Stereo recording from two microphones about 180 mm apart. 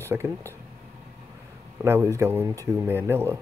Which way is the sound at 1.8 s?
15° right (ahead or behind).